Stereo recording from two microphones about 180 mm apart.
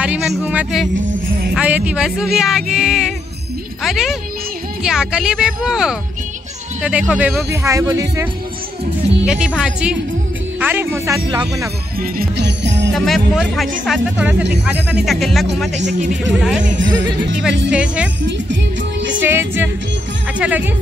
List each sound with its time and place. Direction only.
0.0 s speech: 5° right (ahead or behind)
0.9 s jingle bell: 45° right (ahead or behind)
1.5 s speech: 5° right (ahead or behind)
7.6 s speech: 15° right (ahead or behind)
9.2 s speech: 5° right (ahead or behind)
11.2 s speech: 20° right (ahead or behind)
12.0 s music: 60° right (ahead or behind)
12.9 s speech: centre (ahead or behind)
15.8 s a man's voice: 40° right (ahead or behind)
16.3 s speech: centre (ahead or behind)
18.2 s music: 85° right
19.2 s speech: 10° right (ahead or behind)